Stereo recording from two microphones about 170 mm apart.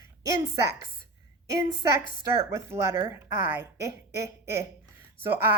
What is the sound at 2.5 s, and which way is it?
A woman's voice, 20° right (ahead or behind).